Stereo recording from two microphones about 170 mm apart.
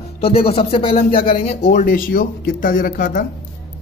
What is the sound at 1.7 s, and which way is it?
Speech, 55° left (ahead or behind).